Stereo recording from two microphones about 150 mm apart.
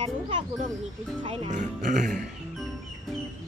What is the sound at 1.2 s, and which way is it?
Music, 35° right (ahead or behind).